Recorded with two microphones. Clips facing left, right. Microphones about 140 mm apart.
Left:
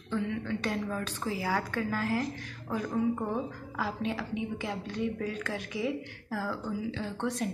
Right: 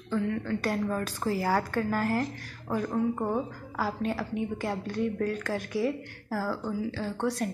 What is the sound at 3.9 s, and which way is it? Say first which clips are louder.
Speech: right 3 dB; centre (ahead or behind).